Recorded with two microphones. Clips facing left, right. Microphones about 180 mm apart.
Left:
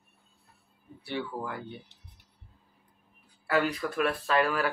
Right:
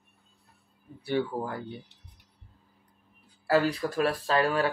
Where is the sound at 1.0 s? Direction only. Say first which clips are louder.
Right 6 dB; 40° right (ahead or behind).